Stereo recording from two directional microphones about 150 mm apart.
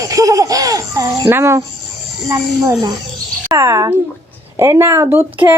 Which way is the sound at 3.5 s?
20° right (ahead or behind).